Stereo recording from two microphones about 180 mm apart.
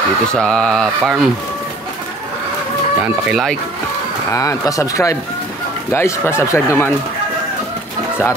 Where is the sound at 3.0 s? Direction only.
Centre (ahead or behind).